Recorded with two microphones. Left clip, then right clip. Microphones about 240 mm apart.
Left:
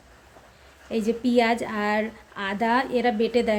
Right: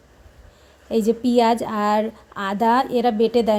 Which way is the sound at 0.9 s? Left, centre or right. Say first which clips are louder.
Right 5 dB; centre.